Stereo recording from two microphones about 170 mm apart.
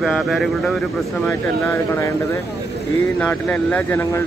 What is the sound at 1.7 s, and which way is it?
Speech, 15° left (ahead or behind).